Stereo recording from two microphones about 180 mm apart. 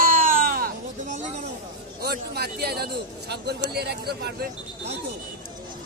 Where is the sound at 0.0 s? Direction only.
50° right (ahead or behind).